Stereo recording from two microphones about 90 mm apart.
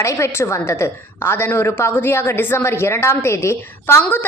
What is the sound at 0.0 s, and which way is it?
A woman's voice, 30° left (ahead or behind).